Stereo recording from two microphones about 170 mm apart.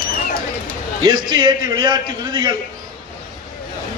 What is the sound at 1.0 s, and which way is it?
A man's voice, 25° right (ahead or behind).